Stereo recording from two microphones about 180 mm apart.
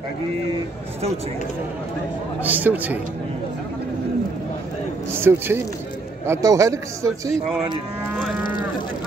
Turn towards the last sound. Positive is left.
turn(degrees=-15)  # may be behind; listen again after turning